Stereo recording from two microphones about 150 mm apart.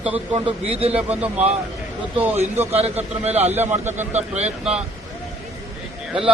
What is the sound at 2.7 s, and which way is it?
Speech, 45° right (ahead or behind).